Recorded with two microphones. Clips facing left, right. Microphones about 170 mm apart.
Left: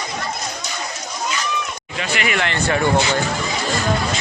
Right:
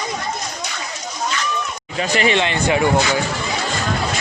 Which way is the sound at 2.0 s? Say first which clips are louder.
Right 5 dB; 35° right (ahead or behind).